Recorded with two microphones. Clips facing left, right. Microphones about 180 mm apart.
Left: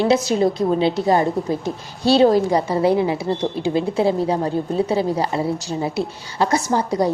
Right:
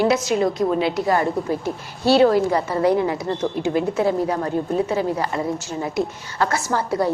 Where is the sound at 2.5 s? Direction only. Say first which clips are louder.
Left 1 dB; 15° left (ahead or behind); by 5.9 s 30° left (ahead or behind).